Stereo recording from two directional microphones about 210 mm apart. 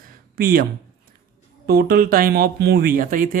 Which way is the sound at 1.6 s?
45° right (ahead or behind).